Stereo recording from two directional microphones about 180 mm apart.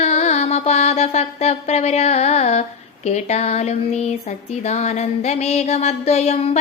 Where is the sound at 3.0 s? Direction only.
40° left (ahead or behind).